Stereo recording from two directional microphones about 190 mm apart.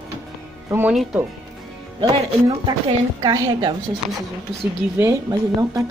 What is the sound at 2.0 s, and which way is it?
Speech, 25° right (ahead or behind).